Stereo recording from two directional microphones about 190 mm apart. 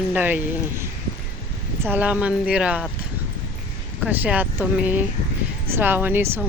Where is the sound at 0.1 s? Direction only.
10° right (ahead or behind).